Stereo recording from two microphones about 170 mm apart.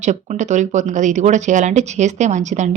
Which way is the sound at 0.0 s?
45° right (ahead or behind).